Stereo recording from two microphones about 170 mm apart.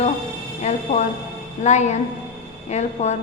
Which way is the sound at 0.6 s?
45° left (ahead or behind).